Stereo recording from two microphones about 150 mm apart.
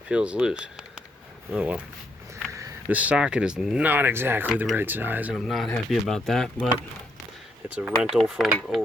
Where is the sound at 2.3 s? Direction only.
20° right (ahead or behind).